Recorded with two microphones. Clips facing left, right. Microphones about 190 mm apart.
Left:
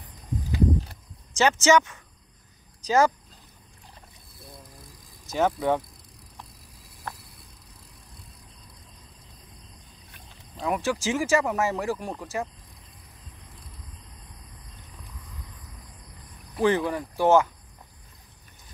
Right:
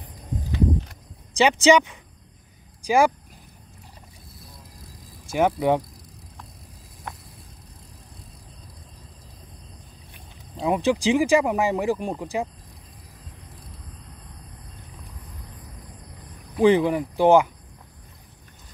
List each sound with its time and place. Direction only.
1.3 s speech: 15° right (ahead or behind)
5.3 s speech: 15° right (ahead or behind)
10.6 s speech: 20° right (ahead or behind)
16.5 s speech: 15° right (ahead or behind)